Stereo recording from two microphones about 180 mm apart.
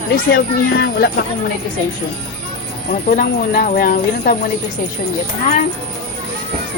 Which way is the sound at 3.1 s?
50° left (ahead or behind).